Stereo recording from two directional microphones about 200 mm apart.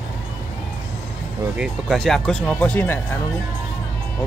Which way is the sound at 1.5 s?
Centre (ahead or behind).